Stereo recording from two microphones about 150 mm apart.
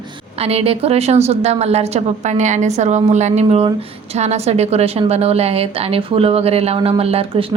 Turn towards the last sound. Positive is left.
turn(degrees=-40)  # may be behind; listen again after turning